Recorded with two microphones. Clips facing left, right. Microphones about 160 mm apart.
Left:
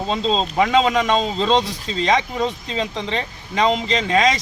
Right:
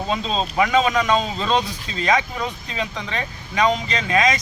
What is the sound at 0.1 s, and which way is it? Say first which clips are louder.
Speech: left 4 dB; 25° left (ahead or behind).